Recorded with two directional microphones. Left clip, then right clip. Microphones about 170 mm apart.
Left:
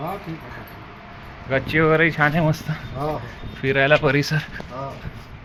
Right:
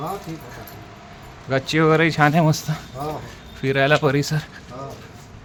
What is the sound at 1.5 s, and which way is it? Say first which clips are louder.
Speech: even; 40° right (ahead or behind).